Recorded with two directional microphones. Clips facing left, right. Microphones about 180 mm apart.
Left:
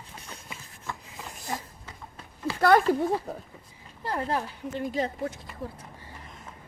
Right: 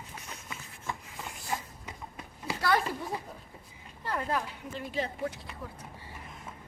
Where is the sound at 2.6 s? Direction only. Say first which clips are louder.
Left 9 dB; 50° left (ahead or behind).